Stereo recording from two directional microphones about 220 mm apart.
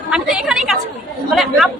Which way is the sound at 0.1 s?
5° right (ahead or behind).